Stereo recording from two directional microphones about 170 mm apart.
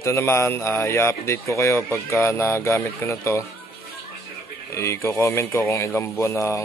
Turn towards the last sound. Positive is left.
turn(degrees=15)  # may be behind; listen again after turning